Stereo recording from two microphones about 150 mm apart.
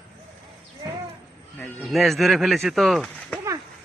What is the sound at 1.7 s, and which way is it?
Speech, centre (ahead or behind).